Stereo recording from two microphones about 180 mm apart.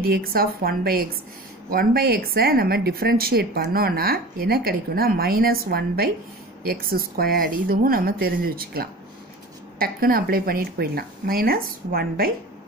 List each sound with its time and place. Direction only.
0.0 s speech: 55° right (ahead or behind)